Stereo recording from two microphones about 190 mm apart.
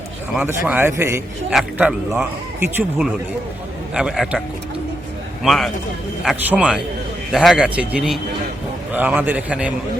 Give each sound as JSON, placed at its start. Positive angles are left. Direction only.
{"t": 0.3, "sound": "a man's voice", "side_deg": -5}
{"t": 1.5, "sound": "a man's voice", "side_deg": -5}